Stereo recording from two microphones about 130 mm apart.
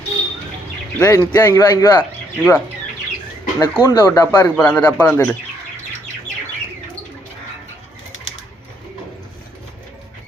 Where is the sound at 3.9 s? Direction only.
25° left (ahead or behind).